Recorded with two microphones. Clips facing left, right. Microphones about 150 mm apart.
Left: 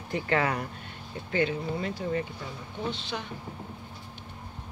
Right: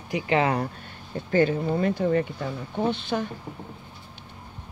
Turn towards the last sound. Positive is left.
turn(degrees=-50)  # may be behind; listen again after turning